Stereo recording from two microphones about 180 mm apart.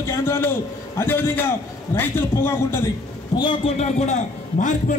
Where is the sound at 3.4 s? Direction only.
30° left (ahead or behind).